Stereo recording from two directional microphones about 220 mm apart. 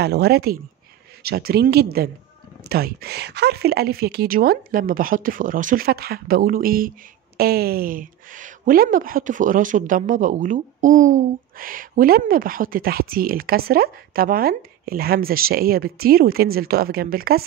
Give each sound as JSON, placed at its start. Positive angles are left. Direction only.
{"t": 0.0, "sound": "speech", "side_deg": -45}